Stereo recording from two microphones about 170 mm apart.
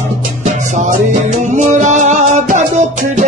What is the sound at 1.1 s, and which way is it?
Music, 45° right (ahead or behind).